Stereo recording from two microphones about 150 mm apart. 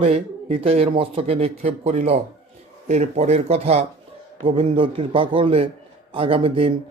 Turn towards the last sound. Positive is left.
turn(degrees=-40)  # may be behind; listen again after turning